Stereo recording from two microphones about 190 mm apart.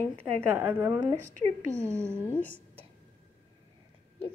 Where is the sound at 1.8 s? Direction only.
15° right (ahead or behind).